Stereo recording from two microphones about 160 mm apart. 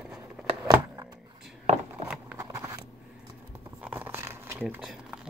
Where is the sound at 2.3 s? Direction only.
20° right (ahead or behind).